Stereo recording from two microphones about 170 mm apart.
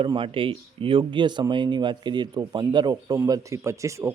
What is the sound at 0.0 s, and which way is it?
Speech, 30° right (ahead or behind).